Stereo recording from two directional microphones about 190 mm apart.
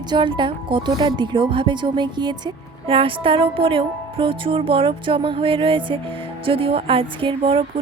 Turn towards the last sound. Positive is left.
turn(degrees=-30)  # may be behind; listen again after turning